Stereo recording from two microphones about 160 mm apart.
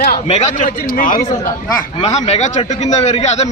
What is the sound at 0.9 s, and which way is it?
Speech, 60° left (ahead or behind).